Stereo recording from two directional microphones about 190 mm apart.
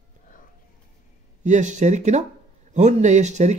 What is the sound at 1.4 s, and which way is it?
Speech, 40° right (ahead or behind).